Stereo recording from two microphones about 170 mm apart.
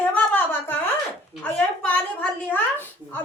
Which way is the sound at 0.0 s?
10° left (ahead or behind).